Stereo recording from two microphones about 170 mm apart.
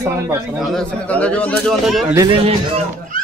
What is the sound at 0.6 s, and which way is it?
A man's voice, 5° left (ahead or behind).